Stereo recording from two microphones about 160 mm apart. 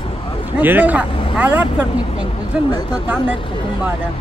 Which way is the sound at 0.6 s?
10° right (ahead or behind).